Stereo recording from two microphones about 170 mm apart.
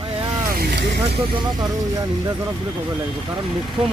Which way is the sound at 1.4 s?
25° right (ahead or behind).